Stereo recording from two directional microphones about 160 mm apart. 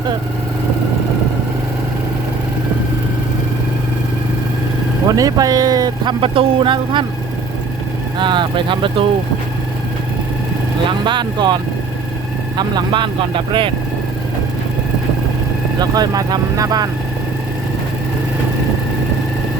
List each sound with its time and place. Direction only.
5.0 s speech: 20° right (ahead or behind)
8.2 s speech: 30° right (ahead or behind)
11.0 s speech: 30° right (ahead or behind)
15.8 s speech: 25° right (ahead or behind)